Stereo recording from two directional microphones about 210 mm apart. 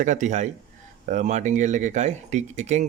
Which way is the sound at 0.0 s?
35° right (ahead or behind).